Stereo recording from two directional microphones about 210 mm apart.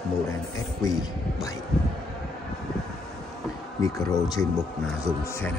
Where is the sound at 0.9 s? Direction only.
Centre (ahead or behind).